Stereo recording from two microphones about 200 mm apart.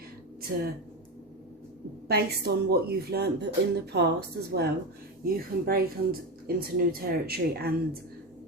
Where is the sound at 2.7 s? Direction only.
50° right (ahead or behind).